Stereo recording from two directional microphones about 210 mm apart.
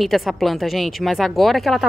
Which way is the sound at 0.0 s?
Centre (ahead or behind).